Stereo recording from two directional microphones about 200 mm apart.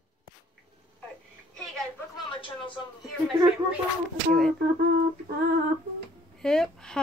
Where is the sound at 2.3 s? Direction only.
25° left (ahead or behind).